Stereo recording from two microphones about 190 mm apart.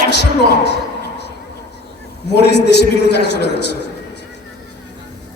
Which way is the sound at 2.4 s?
60° left (ahead or behind).